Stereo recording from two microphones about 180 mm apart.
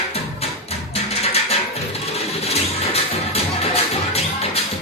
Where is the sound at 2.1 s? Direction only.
35° left (ahead or behind).